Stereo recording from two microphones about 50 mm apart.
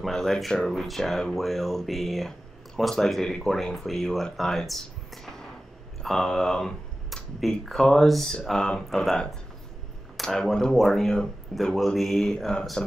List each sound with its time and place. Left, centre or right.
0.0 s speech: centre
3.5 s speech: centre
7.8 s speech: centre
10.2 s speech: centre